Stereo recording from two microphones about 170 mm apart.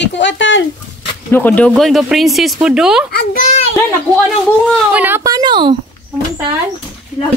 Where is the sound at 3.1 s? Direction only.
50° left (ahead or behind).